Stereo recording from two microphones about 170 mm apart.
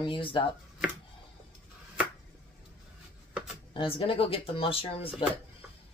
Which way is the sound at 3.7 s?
30° left (ahead or behind).